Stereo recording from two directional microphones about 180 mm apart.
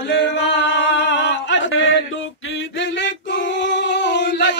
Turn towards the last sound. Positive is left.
turn(degrees=75)  # may be behind; listen again after turning